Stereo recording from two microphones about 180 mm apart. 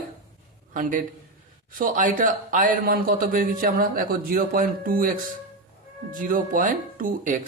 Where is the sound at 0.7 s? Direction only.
50° right (ahead or behind).